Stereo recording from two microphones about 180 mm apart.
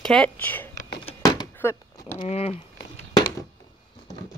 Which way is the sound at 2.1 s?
35° left (ahead or behind).